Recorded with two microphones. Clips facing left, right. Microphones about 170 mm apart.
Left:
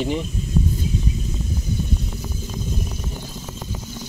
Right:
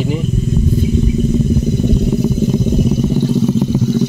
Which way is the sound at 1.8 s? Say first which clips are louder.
Right 15 dB; 70° right (ahead or behind).